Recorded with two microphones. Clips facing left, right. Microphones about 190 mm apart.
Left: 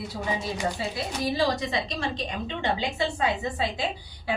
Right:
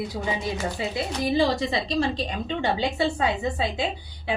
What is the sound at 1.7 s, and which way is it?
Speech, 35° right (ahead or behind).